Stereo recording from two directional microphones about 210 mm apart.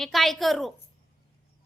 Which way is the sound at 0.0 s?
Centre (ahead or behind).